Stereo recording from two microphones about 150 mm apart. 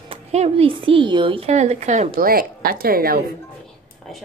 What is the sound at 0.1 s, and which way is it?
A woman's voice, 45° right (ahead or behind).